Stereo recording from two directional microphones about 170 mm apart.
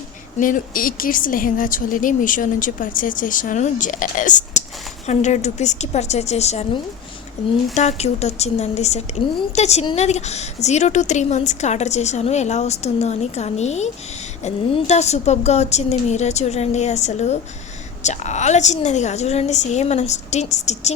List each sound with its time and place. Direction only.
0.3 s a woman's voice: 50° left (ahead or behind)
7.7 s a woman's voice: 40° left (ahead or behind)